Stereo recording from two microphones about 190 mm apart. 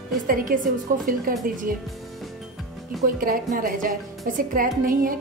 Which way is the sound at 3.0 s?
45° right (ahead or behind).